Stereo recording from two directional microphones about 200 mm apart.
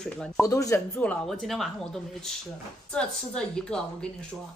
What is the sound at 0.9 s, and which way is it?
A woman's voice, 5° left (ahead or behind).